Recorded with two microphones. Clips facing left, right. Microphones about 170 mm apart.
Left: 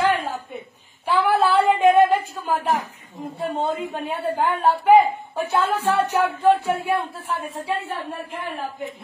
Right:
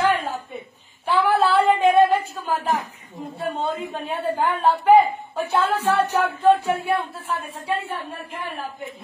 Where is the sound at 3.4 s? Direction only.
10° left (ahead or behind).